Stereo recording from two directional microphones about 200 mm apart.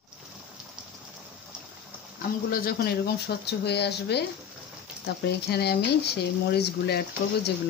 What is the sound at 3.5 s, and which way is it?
Speech, 55° left (ahead or behind).